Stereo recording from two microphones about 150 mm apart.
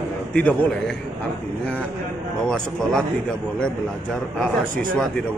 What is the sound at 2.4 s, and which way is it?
Speech, 5° left (ahead or behind).